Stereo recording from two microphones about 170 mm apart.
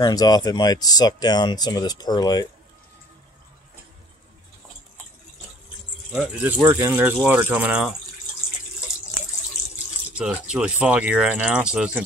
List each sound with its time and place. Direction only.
0.0 s speech: 20° left (ahead or behind)
6.1 s speech: 10° right (ahead or behind)
10.1 s speech: 5° right (ahead or behind)